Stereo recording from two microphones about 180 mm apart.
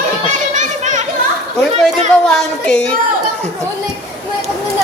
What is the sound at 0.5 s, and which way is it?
Children playing, 45° right (ahead or behind).